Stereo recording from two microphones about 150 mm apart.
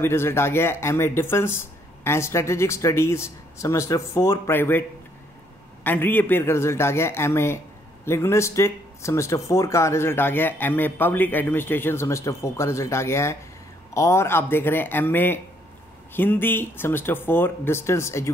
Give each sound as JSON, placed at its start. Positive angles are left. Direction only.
{"t": 0.0, "sound": "speech", "side_deg": 15}
{"t": 5.9, "sound": "speech", "side_deg": 15}